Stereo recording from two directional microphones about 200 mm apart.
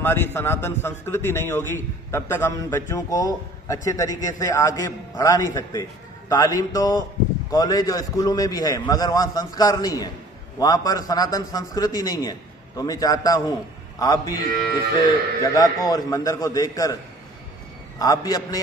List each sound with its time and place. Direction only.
0.0 s a man's voice: 10° left (ahead or behind)
14.5 s livestock: 50° right (ahead or behind)
15.5 s a man's voice: 20° left (ahead or behind)
17.9 s a man's voice: 15° left (ahead or behind)